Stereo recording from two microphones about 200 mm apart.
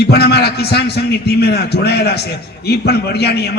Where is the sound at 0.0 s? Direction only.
55° left (ahead or behind).